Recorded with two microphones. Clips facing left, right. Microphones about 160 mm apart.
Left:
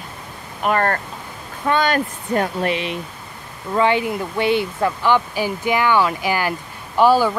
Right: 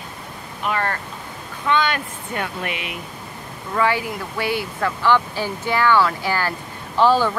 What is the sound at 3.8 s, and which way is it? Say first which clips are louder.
Speech: left 3 dB; 20° left (ahead or behind).